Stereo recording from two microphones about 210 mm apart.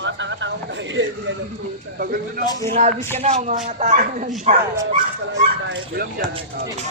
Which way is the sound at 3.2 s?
30° right (ahead or behind).